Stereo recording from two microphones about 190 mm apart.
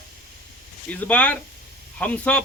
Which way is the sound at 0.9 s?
10° left (ahead or behind).